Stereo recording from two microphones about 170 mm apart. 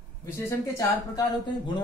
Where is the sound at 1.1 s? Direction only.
25° left (ahead or behind).